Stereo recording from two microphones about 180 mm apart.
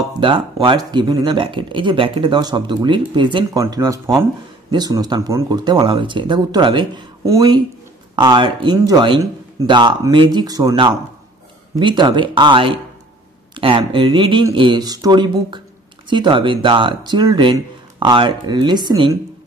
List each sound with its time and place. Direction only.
0.2 s speech: 25° right (ahead or behind)